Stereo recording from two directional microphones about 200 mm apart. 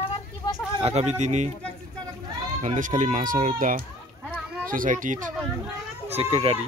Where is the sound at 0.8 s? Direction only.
30° right (ahead or behind).